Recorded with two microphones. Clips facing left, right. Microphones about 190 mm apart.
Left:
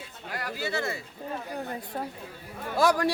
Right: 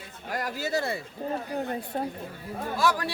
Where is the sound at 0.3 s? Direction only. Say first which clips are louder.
Right 3 dB; 45° right (ahead or behind).